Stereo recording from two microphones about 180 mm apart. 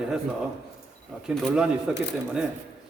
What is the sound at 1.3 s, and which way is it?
Speech, 5° right (ahead or behind).